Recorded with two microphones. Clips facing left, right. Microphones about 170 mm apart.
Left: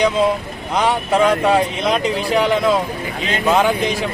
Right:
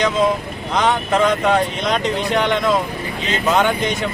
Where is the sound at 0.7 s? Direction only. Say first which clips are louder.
Left 1 dB; 10° left (ahead or behind).